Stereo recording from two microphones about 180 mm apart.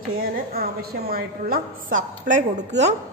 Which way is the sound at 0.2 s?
55° right (ahead or behind).